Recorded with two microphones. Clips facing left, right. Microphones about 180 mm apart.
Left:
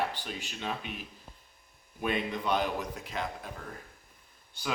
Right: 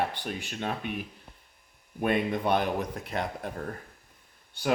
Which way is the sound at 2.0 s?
55° right (ahead or behind).